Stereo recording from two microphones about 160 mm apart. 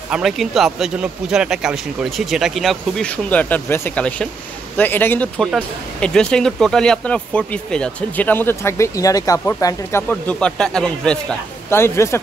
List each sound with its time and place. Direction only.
0.1 s speech: centre (ahead or behind)
11.7 s speech: 15° left (ahead or behind)